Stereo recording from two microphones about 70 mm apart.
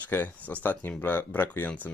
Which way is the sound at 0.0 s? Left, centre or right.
Left.